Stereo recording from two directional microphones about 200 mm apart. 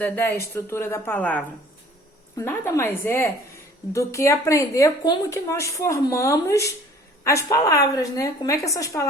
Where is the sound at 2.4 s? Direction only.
10° left (ahead or behind).